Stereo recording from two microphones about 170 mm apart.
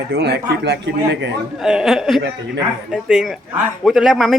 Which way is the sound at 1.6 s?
5° right (ahead or behind).